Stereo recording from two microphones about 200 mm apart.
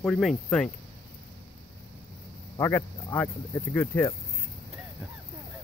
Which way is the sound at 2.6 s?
15° left (ahead or behind).